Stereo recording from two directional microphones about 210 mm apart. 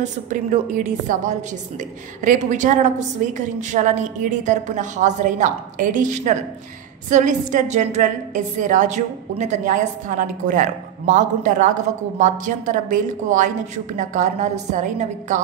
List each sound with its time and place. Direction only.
0.0 s a woman's voice: 35° right (ahead or behind)